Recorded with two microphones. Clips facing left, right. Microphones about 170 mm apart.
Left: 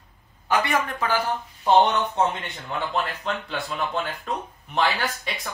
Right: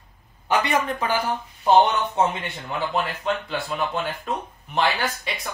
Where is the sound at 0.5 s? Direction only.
20° right (ahead or behind).